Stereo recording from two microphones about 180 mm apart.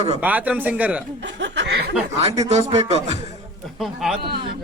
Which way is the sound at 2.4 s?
35° right (ahead or behind).